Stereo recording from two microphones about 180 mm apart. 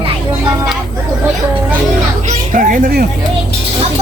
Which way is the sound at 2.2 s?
45° right (ahead or behind).